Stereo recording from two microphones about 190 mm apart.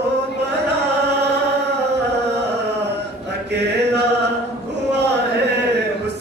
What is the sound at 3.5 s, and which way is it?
Mantra, 60° right (ahead or behind).